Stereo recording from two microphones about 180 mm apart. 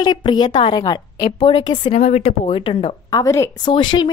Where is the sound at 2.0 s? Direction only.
40° left (ahead or behind).